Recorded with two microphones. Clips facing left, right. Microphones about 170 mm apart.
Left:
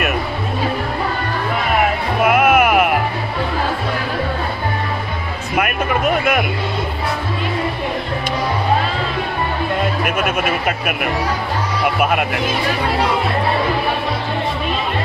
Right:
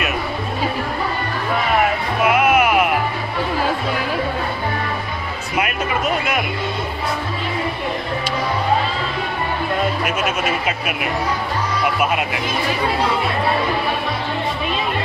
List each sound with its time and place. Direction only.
2.2 s music: 50° left (ahead or behind)
5.6 s a sound: 55° left (ahead or behind)
10.0 s speech: 55° left (ahead or behind)